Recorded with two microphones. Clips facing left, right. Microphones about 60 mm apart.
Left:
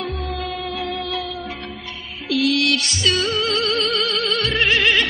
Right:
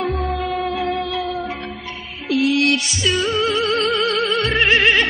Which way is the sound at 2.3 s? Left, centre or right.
Right.